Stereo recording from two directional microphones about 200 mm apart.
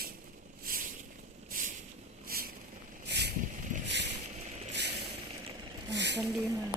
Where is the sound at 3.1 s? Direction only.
55° right (ahead or behind).